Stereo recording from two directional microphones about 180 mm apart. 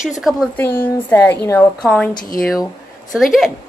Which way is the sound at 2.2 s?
50° left (ahead or behind).